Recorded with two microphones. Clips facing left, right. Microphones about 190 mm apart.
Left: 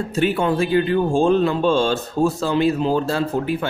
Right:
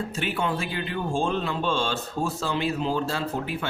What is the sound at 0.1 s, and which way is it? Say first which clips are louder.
A man's voice: left 9 dB; 40° left (ahead or behind).